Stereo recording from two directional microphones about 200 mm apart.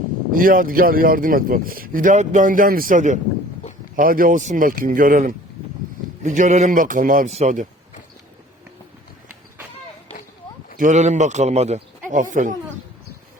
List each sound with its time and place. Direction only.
0.3 s a man's voice: 45° right (ahead or behind)
10.8 s a man's voice: 40° right (ahead or behind)